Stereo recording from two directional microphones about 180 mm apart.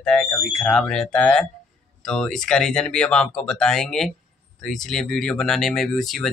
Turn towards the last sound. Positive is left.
turn(degrees=0)  # may be behind; listen again after turning